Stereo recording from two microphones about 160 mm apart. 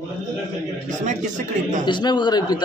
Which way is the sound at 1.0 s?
50° right (ahead or behind).